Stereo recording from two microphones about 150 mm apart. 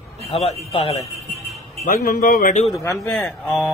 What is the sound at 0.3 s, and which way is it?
Speech, 45° left (ahead or behind).